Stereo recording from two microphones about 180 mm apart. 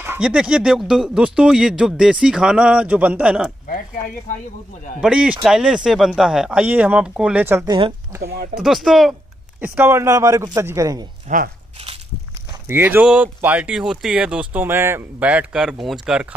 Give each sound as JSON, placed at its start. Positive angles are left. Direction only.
{"t": 0.0, "sound": "speech", "side_deg": -10}
{"t": 5.0, "sound": "speech", "side_deg": -5}
{"t": 8.2, "sound": "speech", "side_deg": -60}
{"t": 8.5, "sound": "speech", "side_deg": 0}
{"t": 9.6, "sound": "speech", "side_deg": -10}
{"t": 11.2, "sound": "speech", "side_deg": -50}
{"t": 12.6, "sound": "speech", "side_deg": -10}